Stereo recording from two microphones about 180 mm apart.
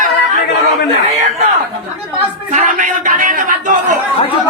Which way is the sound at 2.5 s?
45° right (ahead or behind).